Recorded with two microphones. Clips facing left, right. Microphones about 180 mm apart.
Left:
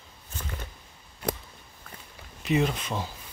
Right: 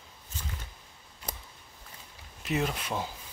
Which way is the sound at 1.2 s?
65° left (ahead or behind).